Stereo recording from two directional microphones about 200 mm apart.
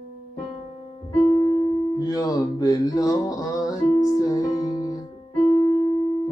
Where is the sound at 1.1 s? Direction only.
30° left (ahead or behind).